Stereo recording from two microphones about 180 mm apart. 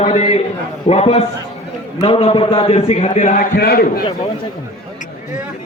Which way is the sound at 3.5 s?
60° left (ahead or behind).